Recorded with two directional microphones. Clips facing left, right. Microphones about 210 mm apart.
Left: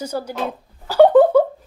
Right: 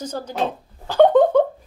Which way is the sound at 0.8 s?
10° left (ahead or behind).